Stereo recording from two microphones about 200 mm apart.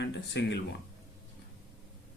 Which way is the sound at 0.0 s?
60° left (ahead or behind).